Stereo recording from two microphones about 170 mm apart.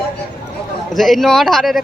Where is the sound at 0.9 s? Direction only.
Centre (ahead or behind).